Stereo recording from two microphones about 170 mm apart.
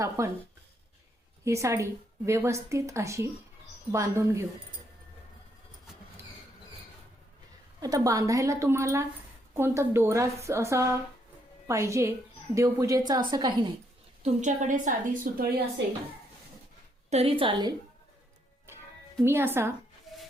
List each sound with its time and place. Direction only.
0.2 s a woman's voice: 15° right (ahead or behind)
1.5 s a woman's voice: 15° right (ahead or behind)
7.8 s a woman's voice: 20° right (ahead or behind)
14.2 s a woman's voice: 40° right (ahead or behind)
17.1 s a woman's voice: 35° right (ahead or behind)
19.2 s a woman's voice: 15° right (ahead or behind)
20.1 s rub: centre (ahead or behind)